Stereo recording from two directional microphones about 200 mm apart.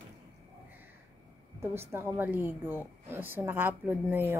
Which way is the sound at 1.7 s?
10° right (ahead or behind).